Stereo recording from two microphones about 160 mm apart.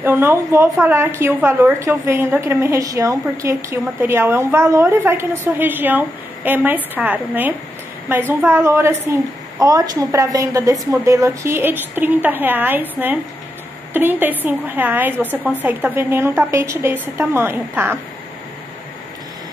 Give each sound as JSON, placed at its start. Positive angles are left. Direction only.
{"t": 0.0, "sound": "a woman's voice", "side_deg": -15}